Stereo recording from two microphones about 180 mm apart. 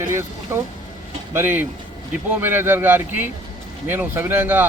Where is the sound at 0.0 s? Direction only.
15° right (ahead or behind).